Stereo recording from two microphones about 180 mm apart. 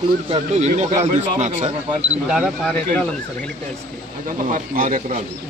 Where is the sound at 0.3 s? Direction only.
40° right (ahead or behind).